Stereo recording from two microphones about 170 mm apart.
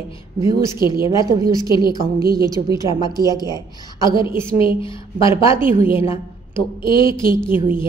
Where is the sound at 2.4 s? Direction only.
20° right (ahead or behind).